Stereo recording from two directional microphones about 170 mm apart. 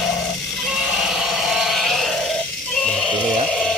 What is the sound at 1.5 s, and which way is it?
Sheep, centre (ahead or behind).